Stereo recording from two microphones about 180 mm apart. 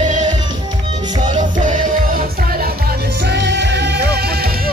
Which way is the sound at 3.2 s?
70° right (ahead or behind).